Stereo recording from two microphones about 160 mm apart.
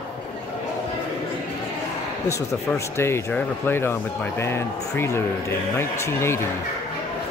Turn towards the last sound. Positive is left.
turn(degrees=15)  # may be behind; listen again after turning